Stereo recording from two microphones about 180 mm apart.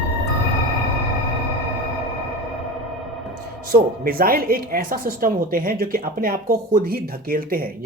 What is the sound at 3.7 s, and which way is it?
Speech, 55° right (ahead or behind).